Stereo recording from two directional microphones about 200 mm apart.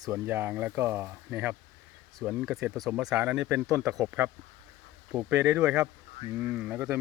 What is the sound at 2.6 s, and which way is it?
Speech, 15° right (ahead or behind).